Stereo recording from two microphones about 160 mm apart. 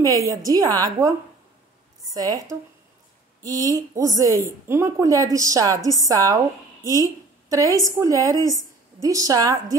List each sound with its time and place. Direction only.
0.0 s a woman's voice: 20° right (ahead or behind)
2.1 s a woman's voice: 25° right (ahead or behind)
3.4 s a woman's voice: 20° right (ahead or behind)